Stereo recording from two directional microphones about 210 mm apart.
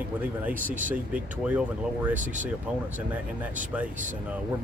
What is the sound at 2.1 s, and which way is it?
Speech, 40° right (ahead or behind).